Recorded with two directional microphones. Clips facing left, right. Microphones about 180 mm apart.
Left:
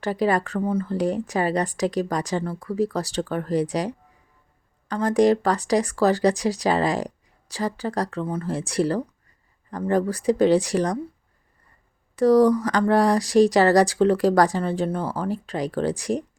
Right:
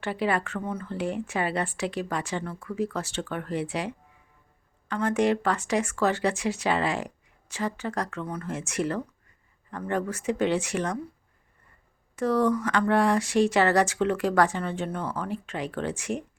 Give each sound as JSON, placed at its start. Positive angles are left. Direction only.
{"t": 0.0, "sound": "speech", "side_deg": 40}
{"t": 12.1, "sound": "speech", "side_deg": 35}